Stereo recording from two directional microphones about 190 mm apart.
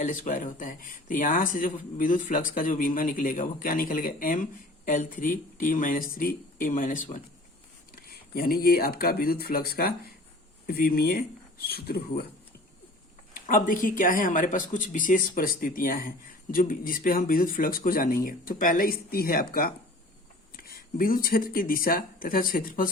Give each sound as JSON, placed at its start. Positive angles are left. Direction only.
{"t": 0.0, "sound": "speech", "side_deg": 40}
{"t": 13.3, "sound": "speech", "side_deg": 45}